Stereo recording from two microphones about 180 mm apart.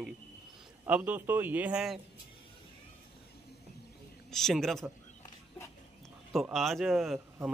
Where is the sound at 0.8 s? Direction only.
10° right (ahead or behind).